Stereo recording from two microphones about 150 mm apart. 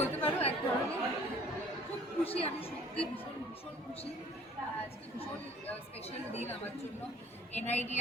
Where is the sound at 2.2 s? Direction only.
40° left (ahead or behind).